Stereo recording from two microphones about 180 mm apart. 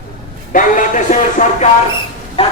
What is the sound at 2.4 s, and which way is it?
Music, 30° left (ahead or behind).